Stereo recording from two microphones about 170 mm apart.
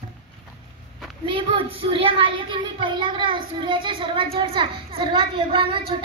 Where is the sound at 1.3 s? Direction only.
30° right (ahead or behind).